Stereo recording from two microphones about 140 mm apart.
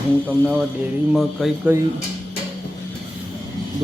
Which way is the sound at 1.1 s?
Centre (ahead or behind).